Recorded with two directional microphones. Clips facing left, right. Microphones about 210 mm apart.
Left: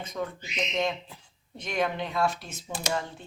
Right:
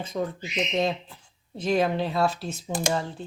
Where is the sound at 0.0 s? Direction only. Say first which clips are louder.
Right 4 dB; 30° right (ahead or behind).